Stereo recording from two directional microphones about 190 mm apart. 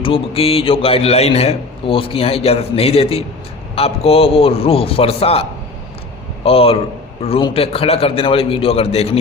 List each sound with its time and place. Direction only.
0.0 s a man's voice: 30° left (ahead or behind)